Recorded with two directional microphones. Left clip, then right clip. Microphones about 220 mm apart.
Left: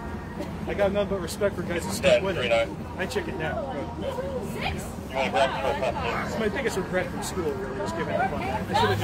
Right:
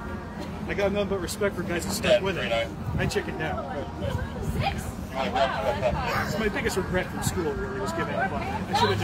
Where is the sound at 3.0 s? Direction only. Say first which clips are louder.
Right 1 dB; 45° right (ahead or behind).